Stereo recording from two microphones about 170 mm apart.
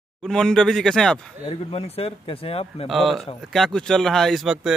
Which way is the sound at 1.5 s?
35° left (ahead or behind).